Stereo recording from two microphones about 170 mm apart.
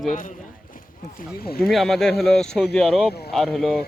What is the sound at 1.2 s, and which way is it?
Speech, 60° left (ahead or behind).